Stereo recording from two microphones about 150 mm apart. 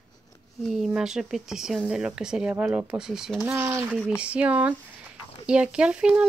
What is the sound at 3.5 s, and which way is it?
Speech, 15° right (ahead or behind).